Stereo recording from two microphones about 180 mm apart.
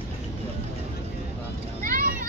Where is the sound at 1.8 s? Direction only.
50° right (ahead or behind).